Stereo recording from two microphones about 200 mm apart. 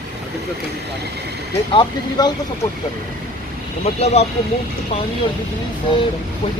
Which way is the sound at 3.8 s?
30° left (ahead or behind).